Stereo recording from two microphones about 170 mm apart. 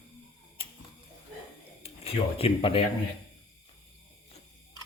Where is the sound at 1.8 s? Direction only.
35° left (ahead or behind).